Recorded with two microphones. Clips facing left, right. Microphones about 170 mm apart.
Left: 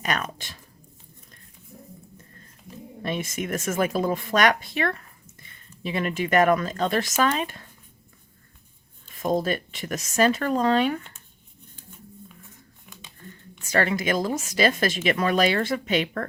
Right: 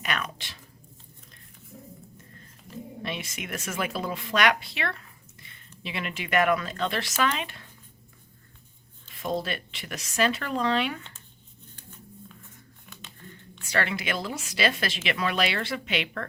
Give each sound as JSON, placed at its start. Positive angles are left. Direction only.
{"t": 0.0, "sound": "speech", "side_deg": 45}
{"t": 3.0, "sound": "a woman's voice", "side_deg": 45}
{"t": 9.1, "sound": "a woman's voice", "side_deg": 45}
{"t": 12.9, "sound": "a sound", "side_deg": 15}
{"t": 13.6, "sound": "a woman's voice", "side_deg": 45}